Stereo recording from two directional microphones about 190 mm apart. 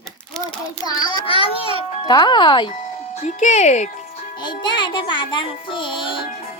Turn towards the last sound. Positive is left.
turn(degrees=25)  # may be behind; listen again after turning